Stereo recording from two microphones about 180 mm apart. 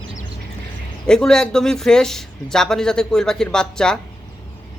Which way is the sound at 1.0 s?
5° left (ahead or behind).